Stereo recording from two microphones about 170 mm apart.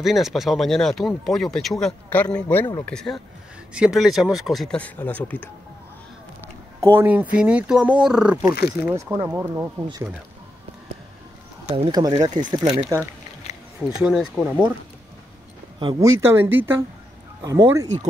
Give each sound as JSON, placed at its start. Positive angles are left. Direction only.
{"t": 0.0, "sound": "speech", "side_deg": 0}
{"t": 6.8, "sound": "speech", "side_deg": -15}
{"t": 8.6, "sound": "speech", "side_deg": -15}
{"t": 11.7, "sound": "speech", "side_deg": -25}
{"t": 13.8, "sound": "speech", "side_deg": -5}
{"t": 16.0, "sound": "speech", "side_deg": -15}